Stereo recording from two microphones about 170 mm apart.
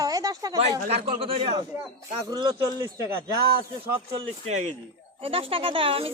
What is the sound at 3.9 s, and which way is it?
Speech, 35° right (ahead or behind).